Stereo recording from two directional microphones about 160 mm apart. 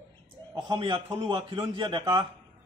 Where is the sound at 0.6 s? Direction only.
35° right (ahead or behind).